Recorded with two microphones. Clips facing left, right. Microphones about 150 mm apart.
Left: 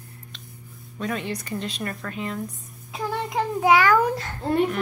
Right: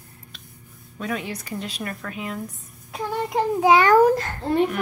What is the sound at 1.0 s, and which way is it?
Speech, 5° right (ahead or behind).